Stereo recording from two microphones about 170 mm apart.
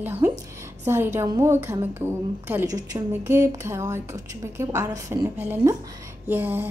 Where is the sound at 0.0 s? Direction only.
10° right (ahead or behind).